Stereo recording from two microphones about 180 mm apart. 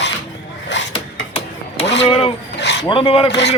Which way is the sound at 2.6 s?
75° left (ahead or behind).